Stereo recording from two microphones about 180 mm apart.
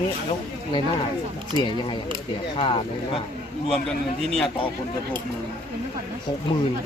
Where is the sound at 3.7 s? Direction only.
5° left (ahead or behind).